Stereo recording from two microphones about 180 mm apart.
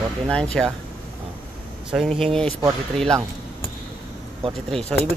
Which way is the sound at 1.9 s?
Centre (ahead or behind).